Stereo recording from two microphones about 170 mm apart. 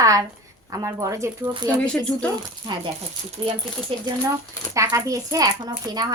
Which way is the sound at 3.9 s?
35° right (ahead or behind).